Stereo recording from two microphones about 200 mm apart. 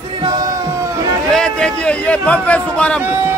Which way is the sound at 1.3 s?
5° left (ahead or behind).